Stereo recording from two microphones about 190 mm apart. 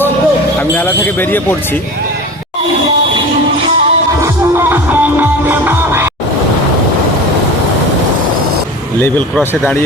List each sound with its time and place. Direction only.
0.8 s speech: 10° left (ahead or behind)
4.5 s music: 10° right (ahead or behind)
9.0 s speech: 10° left (ahead or behind)